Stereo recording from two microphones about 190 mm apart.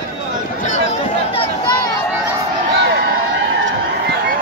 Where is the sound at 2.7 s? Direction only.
65° right (ahead or behind).